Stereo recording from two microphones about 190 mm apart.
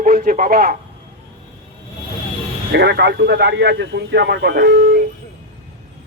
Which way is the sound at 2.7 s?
60° right (ahead or behind).